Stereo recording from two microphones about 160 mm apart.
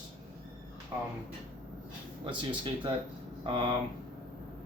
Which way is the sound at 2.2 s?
30° right (ahead or behind).